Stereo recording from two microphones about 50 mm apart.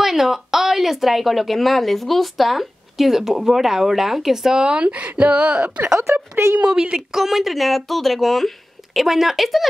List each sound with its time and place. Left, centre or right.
0.0 s speech: centre
7.1 s speech: centre